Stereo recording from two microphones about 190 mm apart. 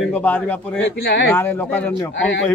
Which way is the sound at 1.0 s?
60° left (ahead or behind).